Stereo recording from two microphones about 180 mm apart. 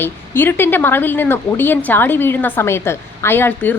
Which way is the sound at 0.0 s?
10° left (ahead or behind).